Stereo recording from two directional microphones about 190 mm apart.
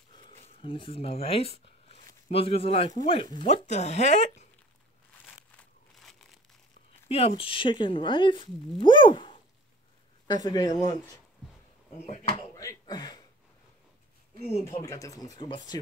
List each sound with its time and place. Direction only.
0.1 s a sound: 25° left (ahead or behind)
0.6 s speech: 30° left (ahead or behind)
5.6 s crumpling: centre (ahead or behind)
7.1 s speech: 30° left (ahead or behind)
12.1 s speech: 35° left (ahead or behind)
12.5 s a sound: 20° left (ahead or behind)
14.7 s speech: 20° left (ahead or behind)